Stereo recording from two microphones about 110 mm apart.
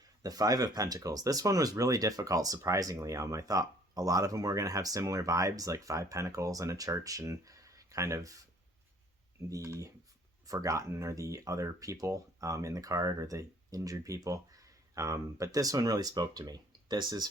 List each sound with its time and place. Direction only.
0.2 s speech: 35° right (ahead or behind)
9.6 s speech: 30° right (ahead or behind)